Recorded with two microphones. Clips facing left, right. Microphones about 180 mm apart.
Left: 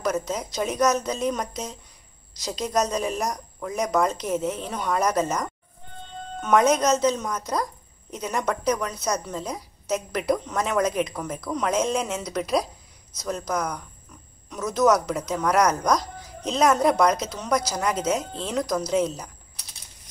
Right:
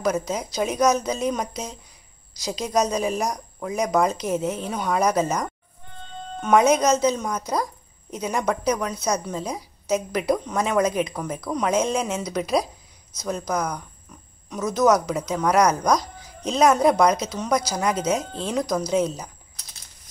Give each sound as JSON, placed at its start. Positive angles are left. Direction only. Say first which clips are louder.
{"t": 0.0, "sound": "a woman's voice", "louder": "right 2 dB", "side_deg": 0}
{"t": 6.6, "sound": "a woman's voice", "louder": "even", "side_deg": 0}